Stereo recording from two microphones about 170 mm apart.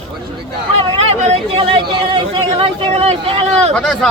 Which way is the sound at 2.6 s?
35° right (ahead or behind).